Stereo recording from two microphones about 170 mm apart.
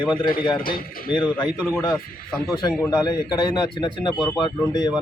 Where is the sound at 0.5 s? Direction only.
55° left (ahead or behind).